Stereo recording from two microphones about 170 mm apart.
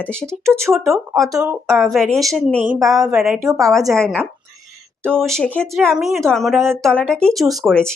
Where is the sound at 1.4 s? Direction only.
5° right (ahead or behind).